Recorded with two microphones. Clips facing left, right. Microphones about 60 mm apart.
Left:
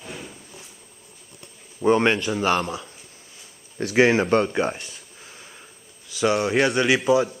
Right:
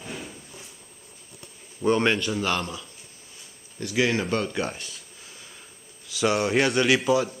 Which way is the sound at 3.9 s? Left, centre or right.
Left.